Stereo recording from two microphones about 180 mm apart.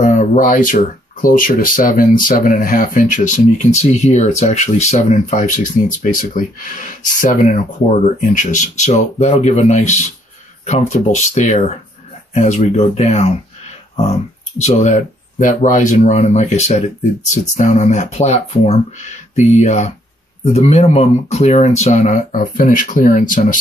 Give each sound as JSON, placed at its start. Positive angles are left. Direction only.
{"t": 0.0, "sound": "speech", "side_deg": 40}
{"t": 14.6, "sound": "speech", "side_deg": 40}